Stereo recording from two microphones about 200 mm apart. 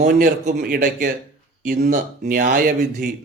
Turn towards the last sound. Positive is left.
turn(degrees=-45)  # may be behind; listen again after turning